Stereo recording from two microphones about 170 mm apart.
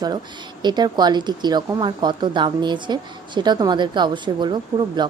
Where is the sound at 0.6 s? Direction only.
25° right (ahead or behind).